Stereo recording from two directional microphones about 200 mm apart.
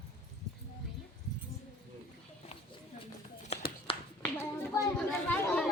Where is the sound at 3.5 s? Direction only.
25° left (ahead or behind).